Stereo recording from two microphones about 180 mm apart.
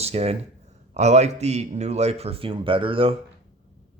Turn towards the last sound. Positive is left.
turn(degrees=-30)  # may be behind; listen again after turning